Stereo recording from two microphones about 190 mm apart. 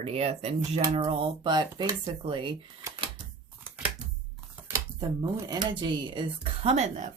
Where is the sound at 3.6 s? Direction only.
10° right (ahead or behind).